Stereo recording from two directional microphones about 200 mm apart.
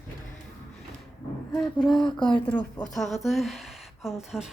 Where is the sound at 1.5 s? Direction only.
Centre (ahead or behind).